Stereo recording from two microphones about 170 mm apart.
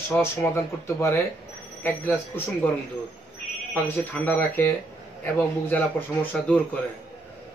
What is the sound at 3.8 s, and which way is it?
Speech, 10° left (ahead or behind).